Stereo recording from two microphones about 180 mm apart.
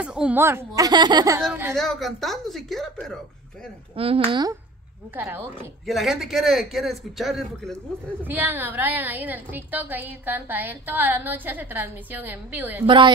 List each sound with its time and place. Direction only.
0.0 s a woman's voice: 5° right (ahead or behind); by 1.4 s 20° right (ahead or behind)
1.8 s a man's voice: centre (ahead or behind)
3.9 s speech: 30° right (ahead or behind)
5.1 s a woman's voice: 10° right (ahead or behind)
5.9 s a man's voice: centre (ahead or behind)
8.2 s a woman's voice: 10° right (ahead or behind)
12.8 s a woman's voice: 25° right (ahead or behind)